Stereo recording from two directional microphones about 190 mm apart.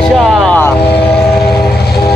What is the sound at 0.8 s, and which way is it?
Speech, 60° left (ahead or behind).